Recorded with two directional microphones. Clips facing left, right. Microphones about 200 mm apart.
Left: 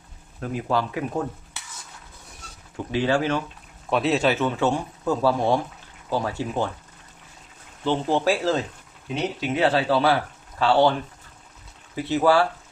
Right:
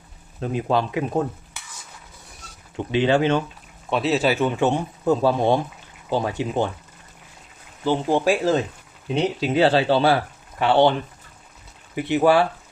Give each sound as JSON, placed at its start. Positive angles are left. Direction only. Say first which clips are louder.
{"t": 0.3, "sound": "speech", "louder": "right 3 dB", "side_deg": -20}
{"t": 2.7, "sound": "speech", "louder": "right 3 dB", "side_deg": -20}
{"t": 3.8, "sound": "a man's voice", "louder": "right 1 dB", "side_deg": 0}
{"t": 7.9, "sound": "a man's voice", "louder": "right 2 dB", "side_deg": -15}
{"t": 9.4, "sound": "speech", "louder": "right 3 dB", "side_deg": -30}
{"t": 11.9, "sound": "a man's voice", "louder": "right 2 dB", "side_deg": -15}